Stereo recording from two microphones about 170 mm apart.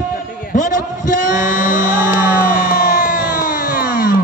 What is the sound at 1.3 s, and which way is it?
Music, 50° left (ahead or behind).